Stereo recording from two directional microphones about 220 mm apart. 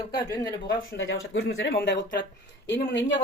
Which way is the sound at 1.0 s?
55° left (ahead or behind).